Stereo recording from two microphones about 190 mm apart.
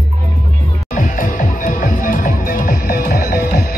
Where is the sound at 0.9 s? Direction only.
45° left (ahead or behind).